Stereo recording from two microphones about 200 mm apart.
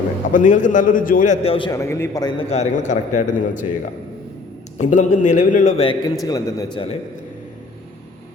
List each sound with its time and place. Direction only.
0.3 s a man's voice: 40° left (ahead or behind); by 2.5 s 20° left (ahead or behind)
2.5 s a man's voice: 35° left (ahead or behind)
4.8 s a man's voice: 40° left (ahead or behind); by 6.8 s 20° left (ahead or behind)